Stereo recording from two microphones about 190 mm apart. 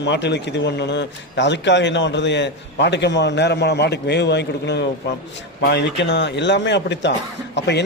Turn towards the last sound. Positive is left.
turn(degrees=65)  # may be behind; listen again after turning